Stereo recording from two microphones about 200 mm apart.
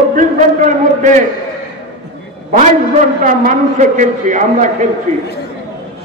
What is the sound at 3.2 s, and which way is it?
A man's voice, 40° right (ahead or behind).